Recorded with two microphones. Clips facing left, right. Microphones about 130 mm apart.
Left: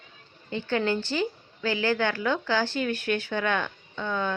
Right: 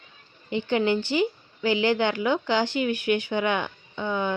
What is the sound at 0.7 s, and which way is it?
A woman's voice, 15° right (ahead or behind).